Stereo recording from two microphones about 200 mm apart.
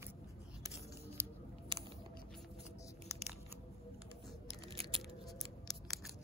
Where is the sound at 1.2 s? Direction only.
10° right (ahead or behind).